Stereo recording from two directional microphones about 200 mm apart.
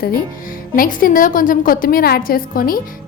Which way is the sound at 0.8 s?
45° left (ahead or behind).